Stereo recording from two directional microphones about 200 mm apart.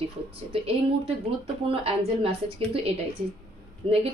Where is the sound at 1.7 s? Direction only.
30° right (ahead or behind).